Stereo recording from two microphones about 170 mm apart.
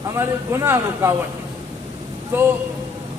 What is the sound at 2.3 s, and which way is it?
Speech, 10° right (ahead or behind).